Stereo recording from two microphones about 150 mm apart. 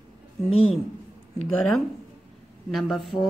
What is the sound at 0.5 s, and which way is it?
Speech, 45° left (ahead or behind).